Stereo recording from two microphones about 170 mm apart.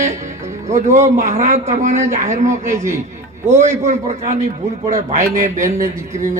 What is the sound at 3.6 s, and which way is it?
A man's voice, 45° right (ahead or behind).